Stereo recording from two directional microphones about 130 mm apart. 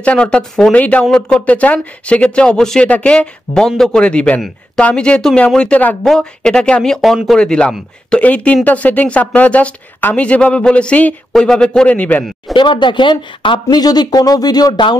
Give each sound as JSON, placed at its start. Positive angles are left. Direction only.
{"t": 0.0, "sound": "speech", "side_deg": 10}
{"t": 12.5, "sound": "speech", "side_deg": 35}